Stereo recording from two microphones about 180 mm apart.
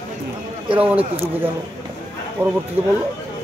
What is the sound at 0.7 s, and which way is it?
Speech, 10° right (ahead or behind).